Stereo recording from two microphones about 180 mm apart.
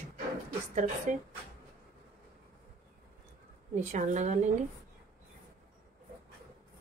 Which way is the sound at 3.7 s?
40° right (ahead or behind).